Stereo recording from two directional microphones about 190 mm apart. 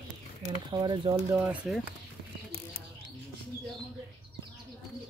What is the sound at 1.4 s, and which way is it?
Speech, centre (ahead or behind).